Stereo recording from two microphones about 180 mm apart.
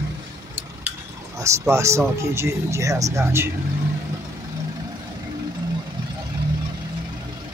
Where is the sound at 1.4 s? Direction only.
15° right (ahead or behind).